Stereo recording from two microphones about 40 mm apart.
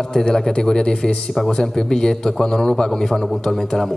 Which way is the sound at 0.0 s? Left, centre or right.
Centre.